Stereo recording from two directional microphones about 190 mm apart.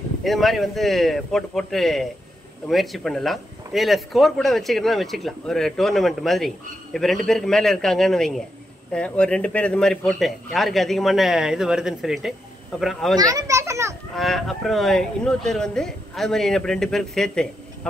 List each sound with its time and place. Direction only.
0.2 s speech: centre (ahead or behind)
13.2 s a child's voice: 20° right (ahead or behind)
14.1 s speech: centre (ahead or behind)